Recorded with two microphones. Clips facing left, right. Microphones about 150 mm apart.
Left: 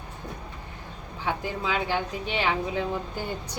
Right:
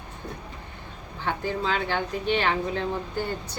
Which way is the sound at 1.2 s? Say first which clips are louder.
Right 2 dB; 10° left (ahead or behind).